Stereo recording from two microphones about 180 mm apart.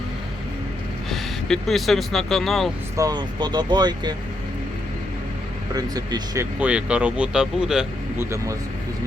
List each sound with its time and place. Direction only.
1.1 s speech: centre (ahead or behind)
3.0 s speech: 25° right (ahead or behind)
5.7 s speech: 20° right (ahead or behind); by 7.9 s 5° right (ahead or behind)
8.2 s speech: 15° right (ahead or behind)